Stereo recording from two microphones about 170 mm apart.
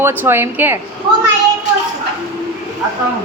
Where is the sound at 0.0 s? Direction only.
10° right (ahead or behind).